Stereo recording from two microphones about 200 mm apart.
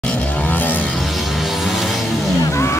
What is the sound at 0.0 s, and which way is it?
Music, 5° left (ahead or behind).